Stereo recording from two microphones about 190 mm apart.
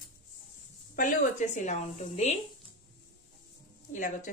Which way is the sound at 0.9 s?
40° left (ahead or behind).